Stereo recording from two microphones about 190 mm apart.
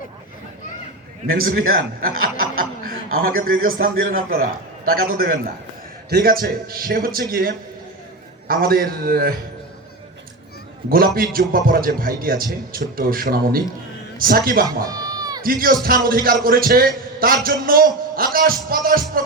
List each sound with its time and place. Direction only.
1.3 s a man's voice: 50° right (ahead or behind)
10.8 s a man's voice: 50° right (ahead or behind)
14.8 s a sound: 20° right (ahead or behind)
15.4 s a man's voice: 50° right (ahead or behind)